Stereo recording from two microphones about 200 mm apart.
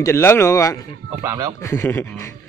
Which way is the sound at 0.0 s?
10° left (ahead or behind).